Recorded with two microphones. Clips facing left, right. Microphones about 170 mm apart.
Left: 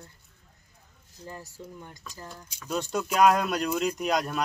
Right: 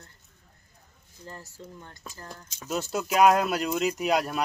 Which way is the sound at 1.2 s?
15° left (ahead or behind).